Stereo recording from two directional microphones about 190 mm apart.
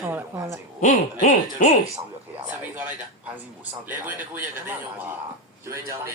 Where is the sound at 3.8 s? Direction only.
10° right (ahead or behind).